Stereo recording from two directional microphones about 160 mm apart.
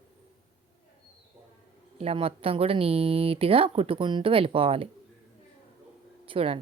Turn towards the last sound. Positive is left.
turn(degrees=-35)  # may be behind; listen again after turning